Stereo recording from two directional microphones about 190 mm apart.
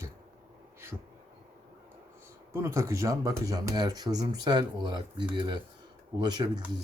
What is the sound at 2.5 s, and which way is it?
Speech, 15° right (ahead or behind).